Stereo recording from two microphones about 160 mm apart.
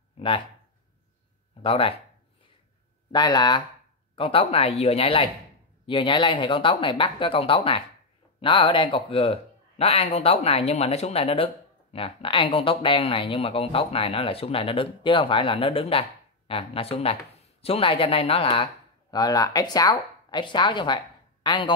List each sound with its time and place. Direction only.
1.6 s speech: 35° left (ahead or behind)
3.1 s speech: 25° left (ahead or behind)
19.1 s speech: 20° left (ahead or behind)